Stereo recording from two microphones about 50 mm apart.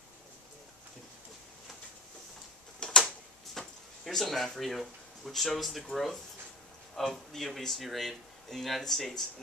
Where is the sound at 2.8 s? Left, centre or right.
Centre.